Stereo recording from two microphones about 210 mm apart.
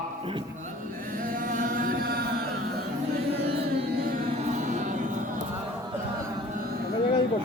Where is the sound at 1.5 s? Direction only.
40° right (ahead or behind).